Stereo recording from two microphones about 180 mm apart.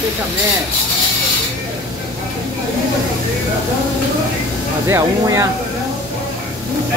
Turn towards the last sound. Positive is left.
turn(degrees=-15)  # may be behind; listen again after turning